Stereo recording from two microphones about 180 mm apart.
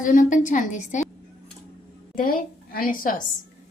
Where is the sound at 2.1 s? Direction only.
50° left (ahead or behind).